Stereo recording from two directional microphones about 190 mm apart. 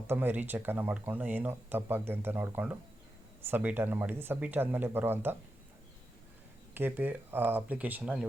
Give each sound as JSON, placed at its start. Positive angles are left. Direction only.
{"t": 0.1, "sound": "speech", "side_deg": -10}
{"t": 6.7, "sound": "speech", "side_deg": -10}